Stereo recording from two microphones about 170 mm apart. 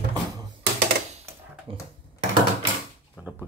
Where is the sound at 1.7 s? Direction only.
30° right (ahead or behind).